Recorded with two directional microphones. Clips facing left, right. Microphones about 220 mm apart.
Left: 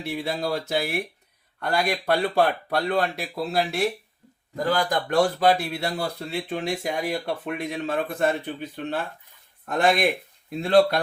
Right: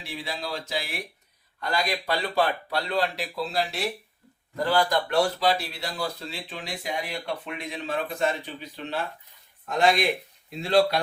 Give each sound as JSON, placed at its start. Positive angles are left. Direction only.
{"t": 0.0, "sound": "speech", "side_deg": 55}
{"t": 4.9, "sound": "speech", "side_deg": 50}